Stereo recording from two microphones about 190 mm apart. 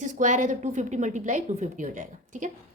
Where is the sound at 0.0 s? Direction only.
40° right (ahead or behind).